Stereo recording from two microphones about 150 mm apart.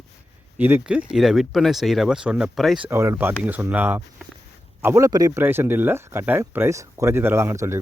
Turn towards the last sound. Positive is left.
turn(degrees=-15)  # may be behind; listen again after turning